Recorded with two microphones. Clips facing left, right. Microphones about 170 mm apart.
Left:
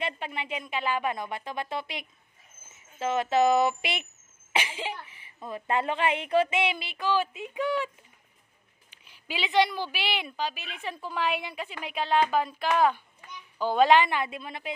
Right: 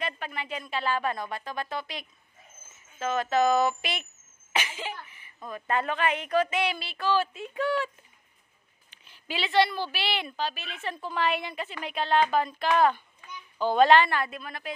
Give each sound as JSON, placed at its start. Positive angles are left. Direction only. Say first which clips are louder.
{"t": 0.0, "sound": "a woman's voice", "louder": "left 1 dB", "side_deg": 25}
{"t": 8.9, "sound": "a woman's voice", "louder": "right 1 dB", "side_deg": 10}